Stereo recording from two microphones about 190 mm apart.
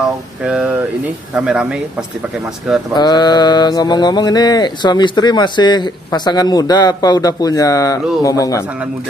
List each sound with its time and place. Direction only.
0.4 s speech: 5° right (ahead or behind)
2.9 s mantra: 20° left (ahead or behind)